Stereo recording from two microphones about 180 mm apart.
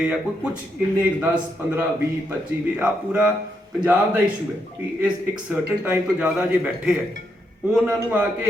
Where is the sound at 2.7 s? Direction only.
5° right (ahead or behind).